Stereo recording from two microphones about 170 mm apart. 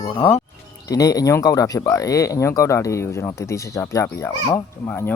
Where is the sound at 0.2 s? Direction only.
15° left (ahead or behind).